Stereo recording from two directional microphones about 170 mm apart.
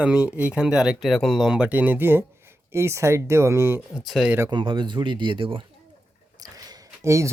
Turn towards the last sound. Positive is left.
turn(degrees=-15)  # may be behind; listen again after turning